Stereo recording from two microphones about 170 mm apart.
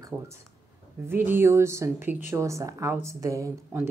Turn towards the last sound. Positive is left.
turn(degrees=-15)  # may be behind; listen again after turning